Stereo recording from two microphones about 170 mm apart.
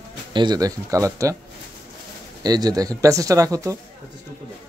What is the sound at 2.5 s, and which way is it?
A man's voice, 25° right (ahead or behind).